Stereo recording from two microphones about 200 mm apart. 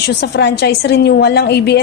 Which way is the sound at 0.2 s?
55° left (ahead or behind).